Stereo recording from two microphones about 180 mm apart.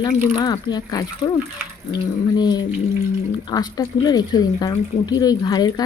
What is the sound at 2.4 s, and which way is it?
Speech, 20° left (ahead or behind).